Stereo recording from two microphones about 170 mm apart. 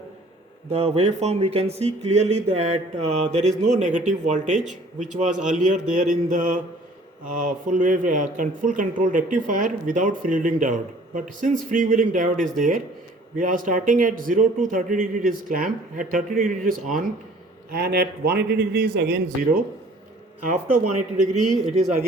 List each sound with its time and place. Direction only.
0.7 s speech: 40° right (ahead or behind)
17.7 s a man's voice: 65° right (ahead or behind)
21.2 s speech: 45° right (ahead or behind)